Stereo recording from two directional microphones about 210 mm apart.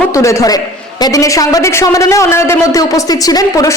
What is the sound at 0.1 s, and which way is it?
A man's voice, 15° left (ahead or behind).